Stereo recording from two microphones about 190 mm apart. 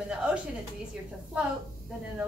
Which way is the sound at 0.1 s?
5° right (ahead or behind).